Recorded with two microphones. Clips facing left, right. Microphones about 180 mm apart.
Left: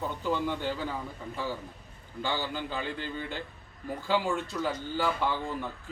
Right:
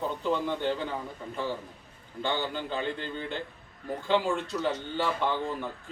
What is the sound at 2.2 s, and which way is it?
A man's voice, 5° left (ahead or behind).